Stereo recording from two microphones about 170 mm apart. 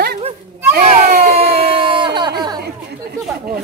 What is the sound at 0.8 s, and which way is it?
Speech, 55° right (ahead or behind).